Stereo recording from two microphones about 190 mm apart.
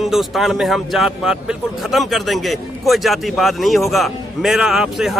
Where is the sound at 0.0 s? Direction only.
Centre (ahead or behind).